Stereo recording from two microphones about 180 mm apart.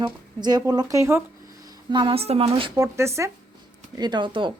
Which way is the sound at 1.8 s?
25° right (ahead or behind).